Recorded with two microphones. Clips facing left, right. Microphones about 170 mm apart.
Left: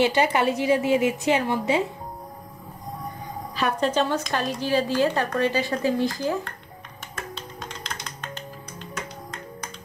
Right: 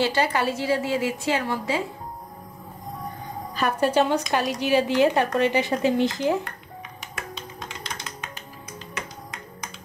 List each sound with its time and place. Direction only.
0.0 s a woman's voice: 20° left (ahead or behind)
3.5 s a woman's voice: centre (ahead or behind)
3.9 s a child's voice: 15° right (ahead or behind)
7.6 s music: 5° right (ahead or behind)